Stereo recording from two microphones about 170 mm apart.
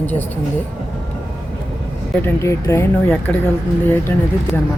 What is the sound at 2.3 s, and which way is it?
Speech, 15° left (ahead or behind).